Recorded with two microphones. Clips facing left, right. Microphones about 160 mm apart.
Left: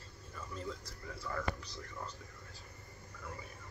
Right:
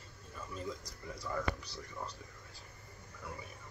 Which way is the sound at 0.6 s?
15° right (ahead or behind).